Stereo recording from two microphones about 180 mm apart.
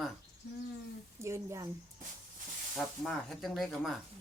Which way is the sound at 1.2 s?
15° right (ahead or behind).